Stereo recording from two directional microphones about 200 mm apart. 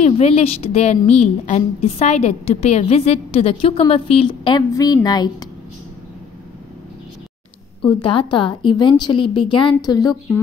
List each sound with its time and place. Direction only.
0.0 s a woman's voice: 30° left (ahead or behind)
7.8 s a woman's voice: 25° left (ahead or behind)